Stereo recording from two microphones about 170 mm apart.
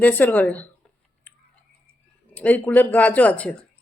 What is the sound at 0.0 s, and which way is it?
Speech, 10° left (ahead or behind).